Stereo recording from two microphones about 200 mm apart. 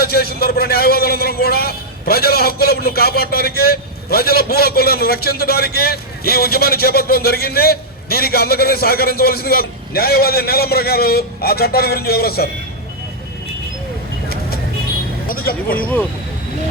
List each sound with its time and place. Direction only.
0.0 s a man's voice: 50° left (ahead or behind)
15.3 s speech: 45° left (ahead or behind)